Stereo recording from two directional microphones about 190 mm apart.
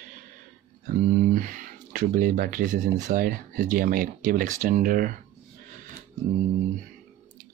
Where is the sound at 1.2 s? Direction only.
45° right (ahead or behind).